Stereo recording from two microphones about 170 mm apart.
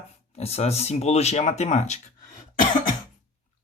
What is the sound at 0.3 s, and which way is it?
Speech, 40° left (ahead or behind).